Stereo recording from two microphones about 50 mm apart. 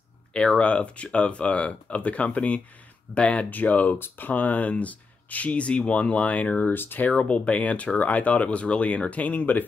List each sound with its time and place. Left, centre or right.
0.3 s speech: centre
3.4 s speech: left
6.7 s speech: left
7.1 s speech: left